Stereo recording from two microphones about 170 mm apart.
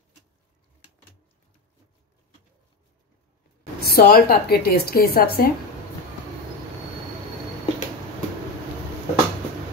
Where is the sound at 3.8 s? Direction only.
65° left (ahead or behind).